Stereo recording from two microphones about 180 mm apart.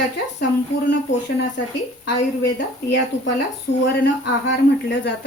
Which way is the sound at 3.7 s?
70° left (ahead or behind).